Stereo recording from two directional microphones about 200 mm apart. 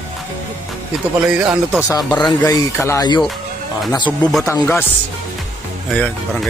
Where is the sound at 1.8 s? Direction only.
15° left (ahead or behind).